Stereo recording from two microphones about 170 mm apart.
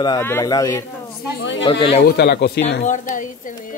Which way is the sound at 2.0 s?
75° left (ahead or behind).